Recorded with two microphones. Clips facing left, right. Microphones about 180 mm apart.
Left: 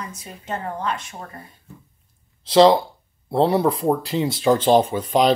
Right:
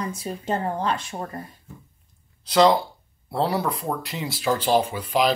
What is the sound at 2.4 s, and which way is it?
Speech, 25° left (ahead or behind).